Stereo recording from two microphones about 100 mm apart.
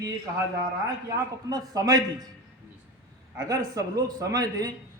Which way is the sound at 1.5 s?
40° right (ahead or behind).